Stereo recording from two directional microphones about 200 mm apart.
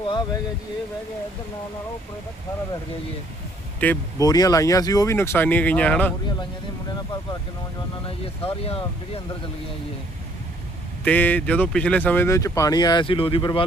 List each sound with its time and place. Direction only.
0.0 s speech: 25° left (ahead or behind)
3.8 s speech: 10° left (ahead or behind)
4.2 s speech: 20° left (ahead or behind)
8.2 s speech: 30° left (ahead or behind)
11.0 s speech: 10° left (ahead or behind); by 13.7 s 25° left (ahead or behind)